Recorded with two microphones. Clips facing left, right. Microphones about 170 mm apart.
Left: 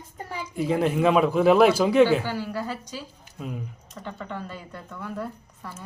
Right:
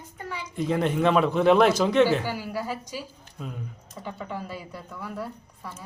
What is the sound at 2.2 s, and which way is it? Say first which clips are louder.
Speech: left 1 dB; 10° right (ahead or behind).